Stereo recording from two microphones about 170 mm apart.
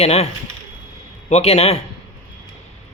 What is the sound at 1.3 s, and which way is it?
Speech, 40° left (ahead or behind).